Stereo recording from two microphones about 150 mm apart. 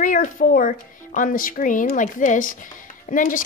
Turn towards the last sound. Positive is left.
turn(degrees=60)  # may be behind; listen again after turning